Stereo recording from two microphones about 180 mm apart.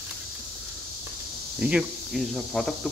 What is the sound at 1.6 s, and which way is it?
Speech, 5° right (ahead or behind).